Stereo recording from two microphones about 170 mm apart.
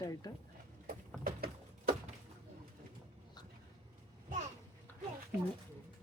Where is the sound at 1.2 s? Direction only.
55° right (ahead or behind).